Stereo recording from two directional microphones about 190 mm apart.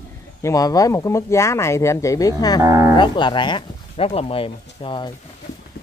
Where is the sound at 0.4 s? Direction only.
20° left (ahead or behind).